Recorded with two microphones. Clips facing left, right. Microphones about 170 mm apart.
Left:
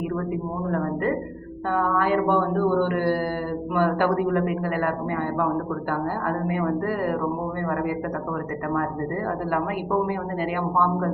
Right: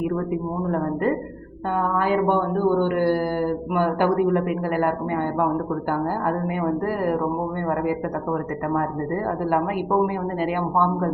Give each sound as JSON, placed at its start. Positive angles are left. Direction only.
{"t": 2.0, "sound": "a man's voice", "side_deg": -20}
{"t": 6.2, "sound": "a man's voice", "side_deg": -20}
{"t": 10.4, "sound": "a man's voice", "side_deg": -25}